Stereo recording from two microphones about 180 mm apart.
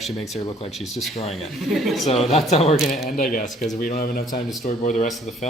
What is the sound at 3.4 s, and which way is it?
Speech, centre (ahead or behind).